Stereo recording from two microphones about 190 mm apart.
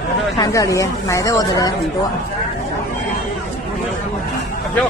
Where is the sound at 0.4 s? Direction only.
15° left (ahead or behind).